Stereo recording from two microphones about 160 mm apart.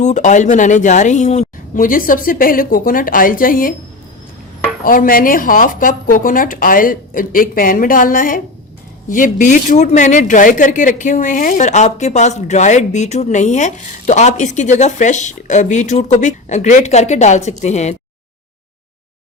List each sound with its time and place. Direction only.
0.0 s speech: 50° left (ahead or behind)
1.7 s speech: 60° left (ahead or behind)
4.8 s speech: 60° left (ahead or behind); by 17.9 s 45° left (ahead or behind)